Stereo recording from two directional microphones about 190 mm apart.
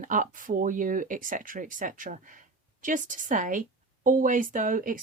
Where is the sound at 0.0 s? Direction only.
45° right (ahead or behind).